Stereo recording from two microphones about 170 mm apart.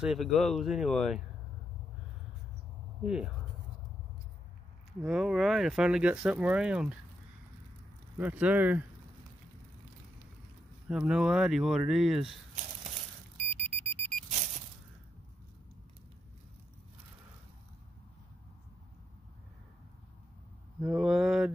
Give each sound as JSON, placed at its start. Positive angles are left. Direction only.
{"t": 0.0, "sound": "speech", "side_deg": 0}
{"t": 3.0, "sound": "speech", "side_deg": -5}
{"t": 5.0, "sound": "speech", "side_deg": -5}
{"t": 8.2, "sound": "speech", "side_deg": -10}
{"t": 10.9, "sound": "speech", "side_deg": -5}
{"t": 13.5, "sound": "alarm", "side_deg": -40}
{"t": 20.8, "sound": "speech", "side_deg": -5}